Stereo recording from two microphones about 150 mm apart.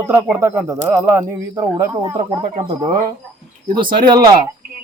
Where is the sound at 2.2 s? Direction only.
35° right (ahead or behind).